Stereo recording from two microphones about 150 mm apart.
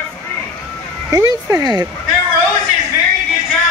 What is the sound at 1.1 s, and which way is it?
Speech, 25° right (ahead or behind).